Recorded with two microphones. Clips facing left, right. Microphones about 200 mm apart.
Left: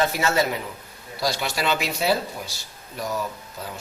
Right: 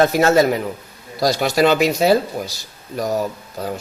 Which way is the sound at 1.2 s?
40° right (ahead or behind).